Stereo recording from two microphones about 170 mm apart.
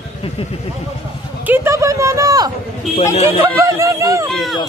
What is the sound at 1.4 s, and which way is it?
Speech, 15° right (ahead or behind).